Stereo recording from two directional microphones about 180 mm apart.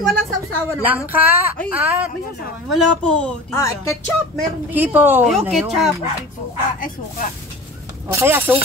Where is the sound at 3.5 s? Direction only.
15° left (ahead or behind).